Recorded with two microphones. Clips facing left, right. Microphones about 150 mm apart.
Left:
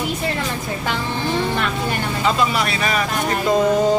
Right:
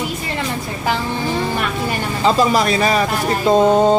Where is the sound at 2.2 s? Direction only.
35° right (ahead or behind).